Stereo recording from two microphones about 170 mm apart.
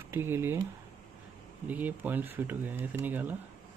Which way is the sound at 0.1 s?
15° right (ahead or behind).